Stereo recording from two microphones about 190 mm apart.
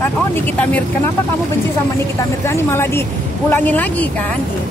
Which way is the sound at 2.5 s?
15° left (ahead or behind).